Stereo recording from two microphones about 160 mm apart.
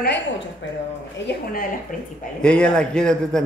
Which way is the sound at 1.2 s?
65° left (ahead or behind).